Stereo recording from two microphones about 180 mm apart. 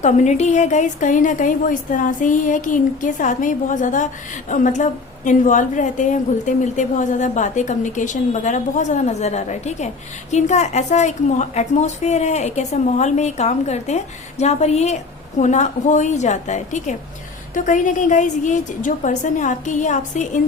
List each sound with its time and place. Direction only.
0.0 s a woman's voice: 40° left (ahead or behind)